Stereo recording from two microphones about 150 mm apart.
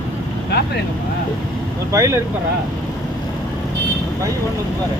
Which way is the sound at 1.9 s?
20° right (ahead or behind).